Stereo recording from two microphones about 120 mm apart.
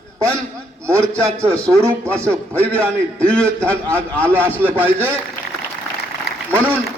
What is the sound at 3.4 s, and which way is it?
Speech, 20° right (ahead or behind).